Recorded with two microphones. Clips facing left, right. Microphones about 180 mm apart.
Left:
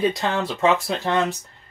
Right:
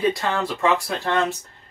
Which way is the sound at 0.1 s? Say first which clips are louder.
Even; 20° left (ahead or behind).